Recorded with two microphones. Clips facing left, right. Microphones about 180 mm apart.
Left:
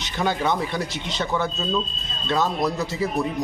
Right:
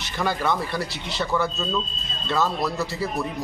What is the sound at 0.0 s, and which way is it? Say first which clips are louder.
Speech: left 1 dB; 20° left (ahead or behind).